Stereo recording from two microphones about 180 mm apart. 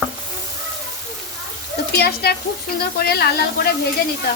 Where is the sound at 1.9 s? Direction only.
60° left (ahead or behind).